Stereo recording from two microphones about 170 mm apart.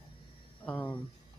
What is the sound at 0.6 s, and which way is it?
Speech, 10° left (ahead or behind).